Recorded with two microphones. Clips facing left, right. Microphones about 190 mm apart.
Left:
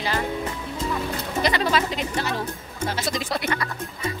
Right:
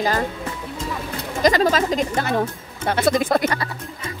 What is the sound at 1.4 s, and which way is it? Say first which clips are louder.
Speech: right 6 dB; 40° right (ahead or behind).